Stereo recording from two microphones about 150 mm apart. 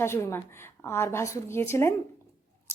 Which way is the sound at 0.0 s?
20° left (ahead or behind).